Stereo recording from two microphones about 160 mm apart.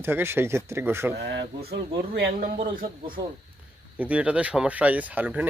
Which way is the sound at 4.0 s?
10° right (ahead or behind).